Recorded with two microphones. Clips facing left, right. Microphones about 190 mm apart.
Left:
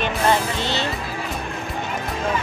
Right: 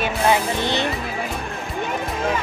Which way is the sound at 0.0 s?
15° right (ahead or behind).